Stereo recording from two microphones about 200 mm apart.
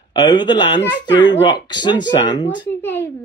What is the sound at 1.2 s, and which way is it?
Speech, 65° left (ahead or behind).